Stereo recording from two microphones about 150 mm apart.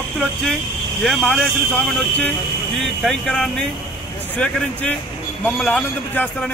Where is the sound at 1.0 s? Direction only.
Centre (ahead or behind).